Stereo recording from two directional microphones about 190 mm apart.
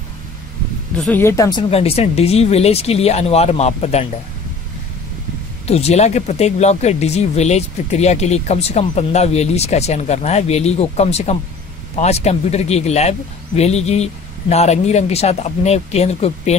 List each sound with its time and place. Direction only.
0.9 s speech: 5° left (ahead or behind); by 4.1 s 35° left (ahead or behind)
5.7 s speech: 35° left (ahead or behind)